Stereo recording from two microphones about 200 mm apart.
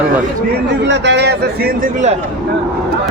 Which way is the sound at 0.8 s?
65° right (ahead or behind).